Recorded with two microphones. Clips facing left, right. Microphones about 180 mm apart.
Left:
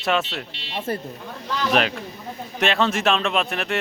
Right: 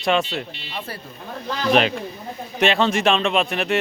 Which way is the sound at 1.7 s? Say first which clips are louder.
Right 4 dB; centre (ahead or behind).